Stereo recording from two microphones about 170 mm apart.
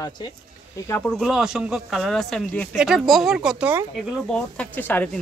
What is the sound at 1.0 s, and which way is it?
A man's voice, centre (ahead or behind).